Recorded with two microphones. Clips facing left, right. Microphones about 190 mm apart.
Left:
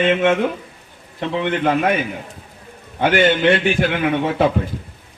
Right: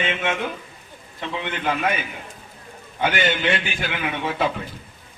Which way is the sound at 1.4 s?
55° left (ahead or behind).